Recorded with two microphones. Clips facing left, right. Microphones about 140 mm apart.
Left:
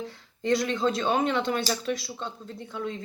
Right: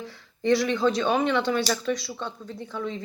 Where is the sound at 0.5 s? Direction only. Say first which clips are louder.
Right 3 dB; 25° left (ahead or behind).